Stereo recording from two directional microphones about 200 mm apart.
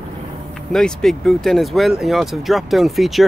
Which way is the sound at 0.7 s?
5° left (ahead or behind).